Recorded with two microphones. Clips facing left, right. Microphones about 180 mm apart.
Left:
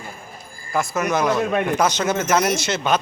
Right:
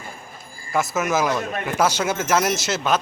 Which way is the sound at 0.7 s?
Centre (ahead or behind).